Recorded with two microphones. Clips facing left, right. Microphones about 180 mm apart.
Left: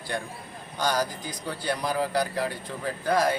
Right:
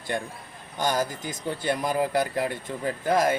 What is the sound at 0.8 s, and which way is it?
Speech, 20° right (ahead or behind).